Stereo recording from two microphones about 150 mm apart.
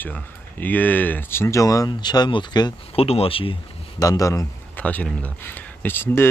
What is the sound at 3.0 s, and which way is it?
Speech, 40° left (ahead or behind).